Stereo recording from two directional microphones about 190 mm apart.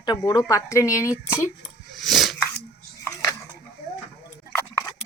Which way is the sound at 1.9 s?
Centre (ahead or behind).